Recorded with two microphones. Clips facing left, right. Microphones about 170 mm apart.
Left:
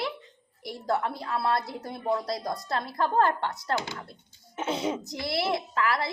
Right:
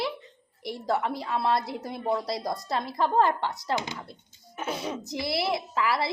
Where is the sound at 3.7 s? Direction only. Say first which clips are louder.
Even; 20° right (ahead or behind).